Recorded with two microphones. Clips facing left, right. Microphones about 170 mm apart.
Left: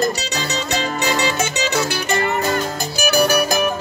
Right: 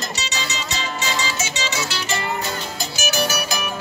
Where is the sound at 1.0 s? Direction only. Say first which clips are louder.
Left 6 dB; 60° left (ahead or behind).